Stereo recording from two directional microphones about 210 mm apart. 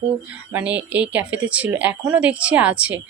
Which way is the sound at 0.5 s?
5° right (ahead or behind).